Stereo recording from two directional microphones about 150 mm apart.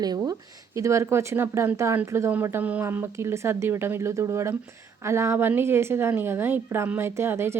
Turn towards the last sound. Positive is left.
turn(degrees=-15)  # may be behind; listen again after turning